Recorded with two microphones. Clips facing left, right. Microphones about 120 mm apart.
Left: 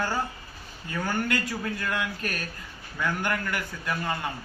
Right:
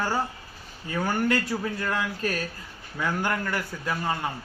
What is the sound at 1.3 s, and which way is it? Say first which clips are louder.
A man's voice: right 3 dB; 30° right (ahead or behind).